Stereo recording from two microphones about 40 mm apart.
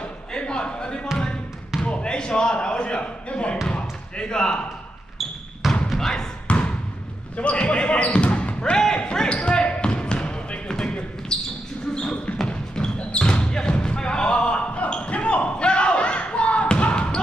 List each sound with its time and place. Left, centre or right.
0.3 s a sound: left
1.1 s basketball bounce: left
1.9 s a sound: left
5.6 s basketball bounce: centre
5.9 s basketball bounce: centre
6.4 s basketball bounce: left
12.4 s basketball bounce: left